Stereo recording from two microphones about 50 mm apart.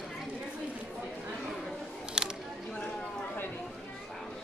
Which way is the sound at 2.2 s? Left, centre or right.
Centre.